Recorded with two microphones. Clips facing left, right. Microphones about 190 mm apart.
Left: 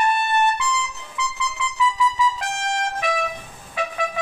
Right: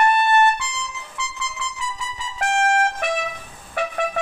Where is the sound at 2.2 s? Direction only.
65° right (ahead or behind).